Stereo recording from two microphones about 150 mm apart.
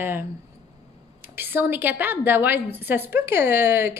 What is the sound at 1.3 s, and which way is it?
A woman's voice, 15° right (ahead or behind).